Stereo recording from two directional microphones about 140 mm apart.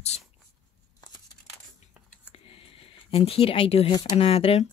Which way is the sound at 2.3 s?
40° left (ahead or behind).